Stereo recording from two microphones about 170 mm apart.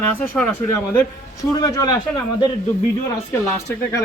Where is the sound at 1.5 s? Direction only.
20° left (ahead or behind).